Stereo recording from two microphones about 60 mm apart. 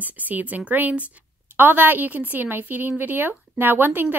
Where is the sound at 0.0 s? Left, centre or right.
Right.